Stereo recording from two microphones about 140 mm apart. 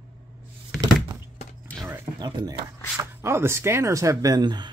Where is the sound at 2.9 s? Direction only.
20° right (ahead or behind).